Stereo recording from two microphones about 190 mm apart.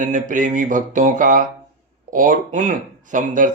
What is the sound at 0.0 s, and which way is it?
Speech, 40° right (ahead or behind).